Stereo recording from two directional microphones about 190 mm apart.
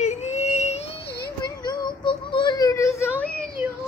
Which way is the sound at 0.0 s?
35° left (ahead or behind).